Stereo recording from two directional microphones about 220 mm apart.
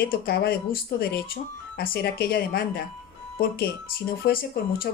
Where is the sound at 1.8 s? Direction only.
45° left (ahead or behind).